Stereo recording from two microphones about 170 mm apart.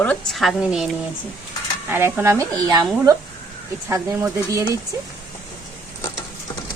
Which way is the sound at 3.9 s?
20° right (ahead or behind).